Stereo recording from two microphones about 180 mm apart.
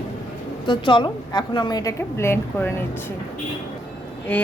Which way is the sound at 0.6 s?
25° left (ahead or behind).